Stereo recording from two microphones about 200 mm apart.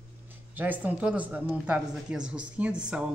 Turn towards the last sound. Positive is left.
turn(degrees=-5)  # may be behind; listen again after turning